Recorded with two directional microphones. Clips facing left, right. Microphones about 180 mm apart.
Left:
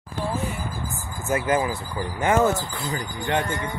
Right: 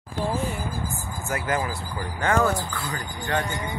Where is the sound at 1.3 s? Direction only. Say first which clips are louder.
Left 5 dB; 20° left (ahead or behind).